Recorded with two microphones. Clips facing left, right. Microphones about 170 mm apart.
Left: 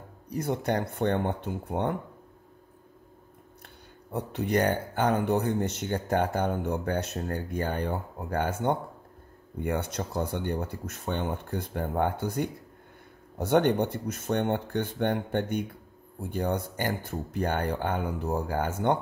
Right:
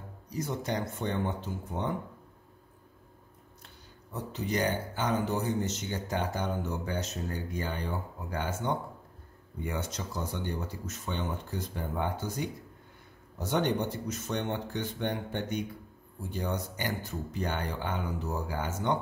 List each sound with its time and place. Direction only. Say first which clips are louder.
0.3 s speech: left 5 dB; 60° left (ahead or behind)
3.6 s speech: left 3 dB; 60° left (ahead or behind)